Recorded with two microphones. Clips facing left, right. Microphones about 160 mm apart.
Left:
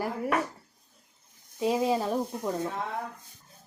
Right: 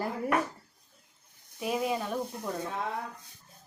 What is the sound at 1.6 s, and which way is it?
Speech, 25° left (ahead or behind).